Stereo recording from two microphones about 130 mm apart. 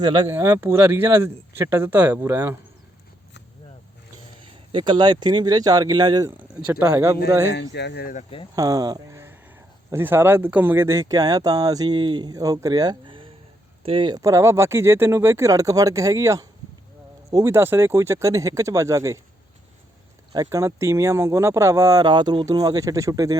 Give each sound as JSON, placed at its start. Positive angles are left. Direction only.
{"t": 0.3, "sound": "speech", "side_deg": -20}
{"t": 4.7, "sound": "speech", "side_deg": -35}
{"t": 6.8, "sound": "speech", "side_deg": -20}
{"t": 9.1, "sound": "speech", "side_deg": -20}
{"t": 14.2, "sound": "speech", "side_deg": -25}
{"t": 20.3, "sound": "speech", "side_deg": -25}